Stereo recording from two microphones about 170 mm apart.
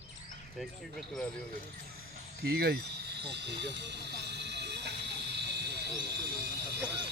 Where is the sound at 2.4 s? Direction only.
65° right (ahead or behind).